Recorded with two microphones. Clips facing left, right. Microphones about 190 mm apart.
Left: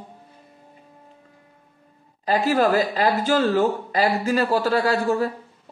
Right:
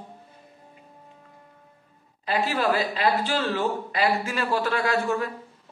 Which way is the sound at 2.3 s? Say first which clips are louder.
Left 5 dB; 40° left (ahead or behind).